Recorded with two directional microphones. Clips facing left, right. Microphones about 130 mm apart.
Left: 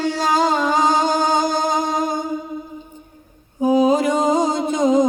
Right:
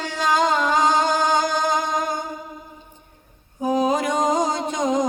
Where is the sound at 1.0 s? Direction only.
35° left (ahead or behind).